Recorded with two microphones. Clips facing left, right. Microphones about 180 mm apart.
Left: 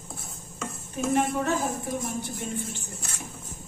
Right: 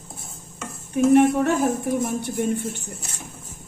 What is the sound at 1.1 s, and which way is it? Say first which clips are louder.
Speech: right 8 dB; 65° right (ahead or behind).